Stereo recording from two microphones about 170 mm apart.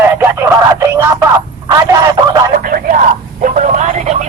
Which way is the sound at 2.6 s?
55° right (ahead or behind).